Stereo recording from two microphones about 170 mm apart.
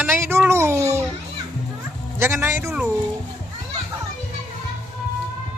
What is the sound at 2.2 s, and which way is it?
Speech, 15° right (ahead or behind).